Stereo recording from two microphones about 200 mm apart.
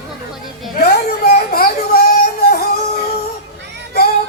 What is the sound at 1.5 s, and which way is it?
Baby cry, 50° left (ahead or behind).